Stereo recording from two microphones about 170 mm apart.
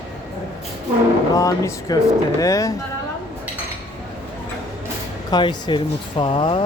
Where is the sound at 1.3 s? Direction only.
20° left (ahead or behind).